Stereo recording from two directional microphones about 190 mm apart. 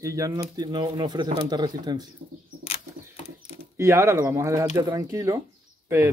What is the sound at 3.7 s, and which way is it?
Speech, 15° right (ahead or behind).